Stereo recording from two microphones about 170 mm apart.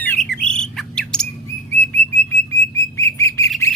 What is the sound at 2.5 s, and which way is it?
Bird, 15° left (ahead or behind).